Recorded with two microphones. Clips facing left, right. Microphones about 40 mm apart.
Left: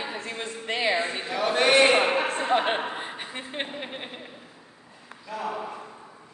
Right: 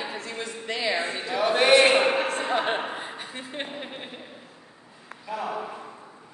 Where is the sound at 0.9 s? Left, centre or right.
Centre.